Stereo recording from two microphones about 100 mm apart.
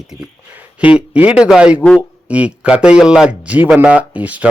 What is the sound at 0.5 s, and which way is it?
Speech, 15° right (ahead or behind).